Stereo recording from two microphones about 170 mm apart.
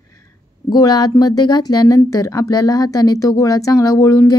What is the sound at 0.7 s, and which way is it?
Speech, 20° left (ahead or behind).